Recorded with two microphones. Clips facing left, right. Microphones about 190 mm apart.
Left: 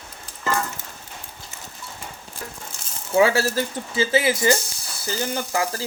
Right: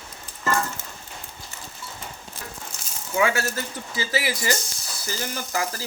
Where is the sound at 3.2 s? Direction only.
30° left (ahead or behind).